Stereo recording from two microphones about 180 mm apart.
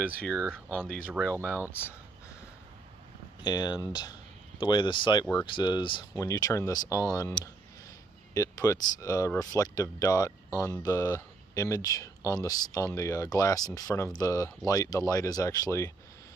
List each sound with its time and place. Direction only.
0.2 s speech: 5° left (ahead or behind)
1.4 s speech: 10° right (ahead or behind)
3.4 s speech: 25° left (ahead or behind)